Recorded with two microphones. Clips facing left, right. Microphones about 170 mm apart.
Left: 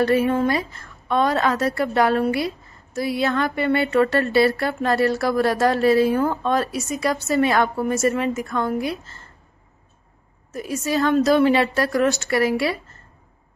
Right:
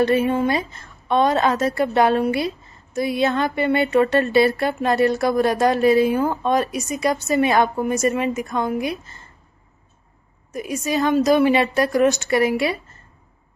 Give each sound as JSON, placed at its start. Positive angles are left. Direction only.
{"t": 0.0, "sound": "a woman's voice", "side_deg": -20}
{"t": 10.5, "sound": "a woman's voice", "side_deg": -15}